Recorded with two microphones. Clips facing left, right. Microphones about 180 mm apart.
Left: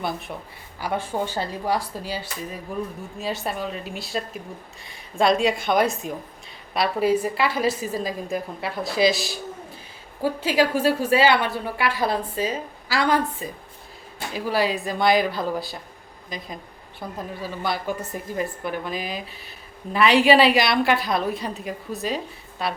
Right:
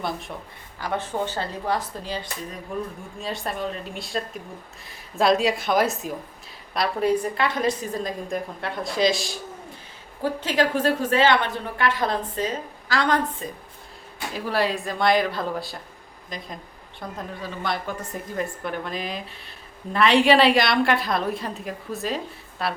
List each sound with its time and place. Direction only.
0.8 s a woman's voice: 10° left (ahead or behind)